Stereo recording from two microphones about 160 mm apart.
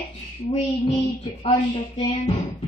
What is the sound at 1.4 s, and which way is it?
Speech, 35° left (ahead or behind).